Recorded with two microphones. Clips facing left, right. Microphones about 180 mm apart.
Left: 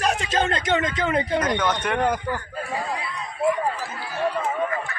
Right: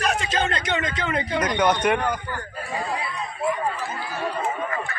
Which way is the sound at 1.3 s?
15° right (ahead or behind).